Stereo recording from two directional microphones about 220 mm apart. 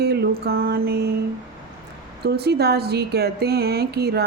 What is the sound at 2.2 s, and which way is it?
Speech, 45° right (ahead or behind).